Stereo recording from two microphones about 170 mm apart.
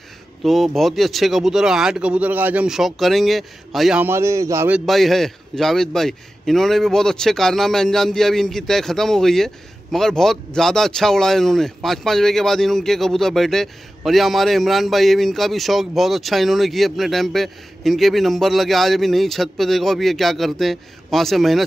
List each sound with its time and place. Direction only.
0.4 s speech: centre (ahead or behind)
4.0 s a man's voice: 15° right (ahead or behind)
4.7 s speech: centre (ahead or behind)